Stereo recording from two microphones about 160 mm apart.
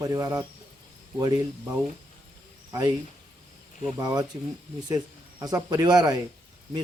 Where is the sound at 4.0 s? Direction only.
25° right (ahead or behind).